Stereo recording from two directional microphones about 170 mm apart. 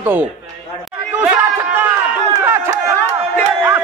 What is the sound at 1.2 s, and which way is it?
Chatter, 10° right (ahead or behind).